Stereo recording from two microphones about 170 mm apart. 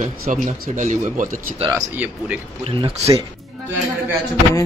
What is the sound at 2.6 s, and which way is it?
Speech, 30° right (ahead or behind).